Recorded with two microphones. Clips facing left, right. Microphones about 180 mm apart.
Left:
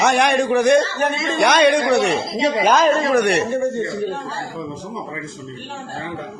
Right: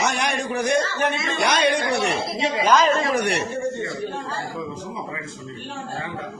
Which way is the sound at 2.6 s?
50° left (ahead or behind).